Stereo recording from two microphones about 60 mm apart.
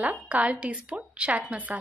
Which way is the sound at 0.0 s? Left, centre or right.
Right.